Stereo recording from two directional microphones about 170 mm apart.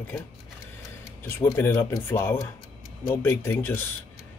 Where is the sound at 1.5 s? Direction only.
15° left (ahead or behind).